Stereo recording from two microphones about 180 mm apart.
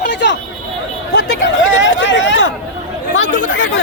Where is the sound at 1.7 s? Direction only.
90° left.